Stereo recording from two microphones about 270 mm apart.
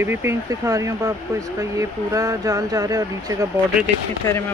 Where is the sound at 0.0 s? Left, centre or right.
Centre.